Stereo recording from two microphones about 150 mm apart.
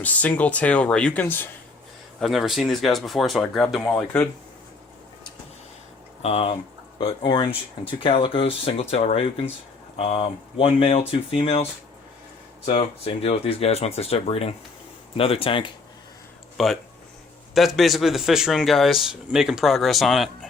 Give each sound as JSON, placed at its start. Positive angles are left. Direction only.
{"t": 0.0, "sound": "speech", "side_deg": 10}
{"t": 2.2, "sound": "speech", "side_deg": 0}
{"t": 6.2, "sound": "speech", "side_deg": 45}
{"t": 7.0, "sound": "speech", "side_deg": 30}
{"t": 16.6, "sound": "speech", "side_deg": 0}